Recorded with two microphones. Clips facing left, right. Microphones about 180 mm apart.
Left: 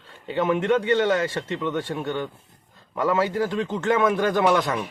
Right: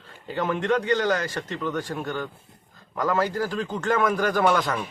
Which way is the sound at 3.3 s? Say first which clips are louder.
Left 3 dB; 20° left (ahead or behind).